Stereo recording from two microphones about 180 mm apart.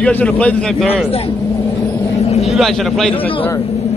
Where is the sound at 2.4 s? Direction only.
Centre (ahead or behind).